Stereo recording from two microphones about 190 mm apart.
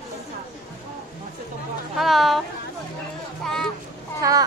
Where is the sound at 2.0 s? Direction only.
Centre (ahead or behind).